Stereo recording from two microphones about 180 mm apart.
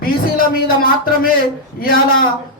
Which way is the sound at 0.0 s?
55° left (ahead or behind).